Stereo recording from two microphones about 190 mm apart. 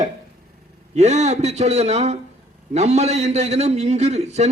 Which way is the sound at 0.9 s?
35° right (ahead or behind).